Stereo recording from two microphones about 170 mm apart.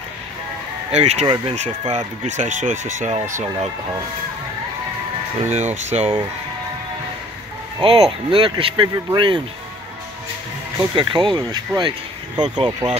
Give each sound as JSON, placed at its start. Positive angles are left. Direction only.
{"t": 0.9, "sound": "speech", "side_deg": -40}
{"t": 5.4, "sound": "speech", "side_deg": -40}
{"t": 7.8, "sound": "speech", "side_deg": -30}
{"t": 11.0, "sound": "speech", "side_deg": -25}